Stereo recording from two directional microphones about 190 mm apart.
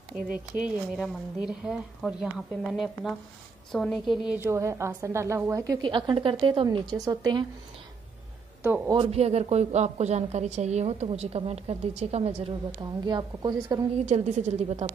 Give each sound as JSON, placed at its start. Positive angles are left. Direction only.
{"t": 0.7, "sound": "a woman's voice", "side_deg": 0}
{"t": 8.6, "sound": "a woman's voice", "side_deg": -10}
{"t": 8.9, "sound": "a woman's voice", "side_deg": -30}
{"t": 13.0, "sound": "a woman's voice", "side_deg": -20}
{"t": 14.0, "sound": "a woman's voice", "side_deg": -40}